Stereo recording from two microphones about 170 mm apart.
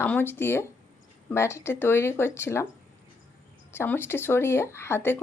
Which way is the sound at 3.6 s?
15° left (ahead or behind).